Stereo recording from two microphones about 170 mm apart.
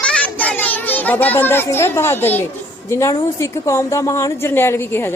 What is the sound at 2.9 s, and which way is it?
A woman's voice, 15° left (ahead or behind).